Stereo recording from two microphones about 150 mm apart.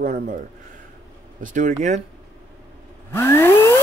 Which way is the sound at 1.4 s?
60° right (ahead or behind).